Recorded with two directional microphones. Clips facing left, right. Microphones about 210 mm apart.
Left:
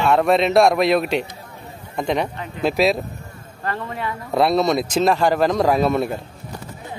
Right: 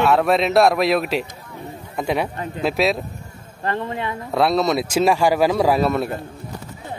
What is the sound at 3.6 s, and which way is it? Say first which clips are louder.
Speech: right 2 dB; 20° right (ahead or behind).